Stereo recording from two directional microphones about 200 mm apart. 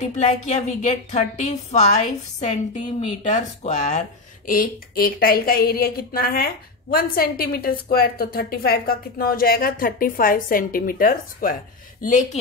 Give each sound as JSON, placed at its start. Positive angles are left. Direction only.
{"t": 0.0, "sound": "a woman's voice", "side_deg": 35}
{"t": 3.3, "sound": "a woman's voice", "side_deg": 35}